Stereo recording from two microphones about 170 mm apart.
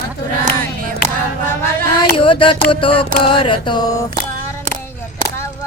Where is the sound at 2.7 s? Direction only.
30° left (ahead or behind).